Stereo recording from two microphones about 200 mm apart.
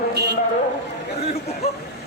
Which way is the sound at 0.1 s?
55° right (ahead or behind).